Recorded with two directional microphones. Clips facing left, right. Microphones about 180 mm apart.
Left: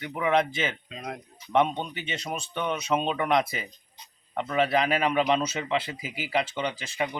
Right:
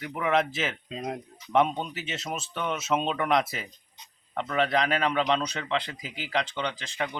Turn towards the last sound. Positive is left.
turn(degrees=5)  # may be behind; listen again after turning